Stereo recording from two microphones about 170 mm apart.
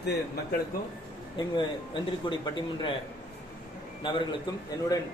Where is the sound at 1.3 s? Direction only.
30° left (ahead or behind).